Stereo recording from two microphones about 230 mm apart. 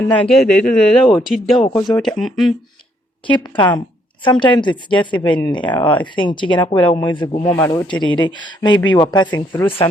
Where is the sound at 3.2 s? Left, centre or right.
Centre.